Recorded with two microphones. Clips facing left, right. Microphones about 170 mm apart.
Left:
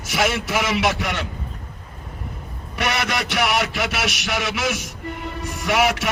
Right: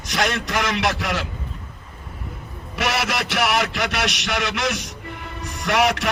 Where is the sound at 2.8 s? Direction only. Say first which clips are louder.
Even; centre (ahead or behind).